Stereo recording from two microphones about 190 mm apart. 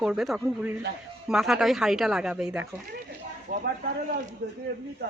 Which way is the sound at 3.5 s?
45° right (ahead or behind).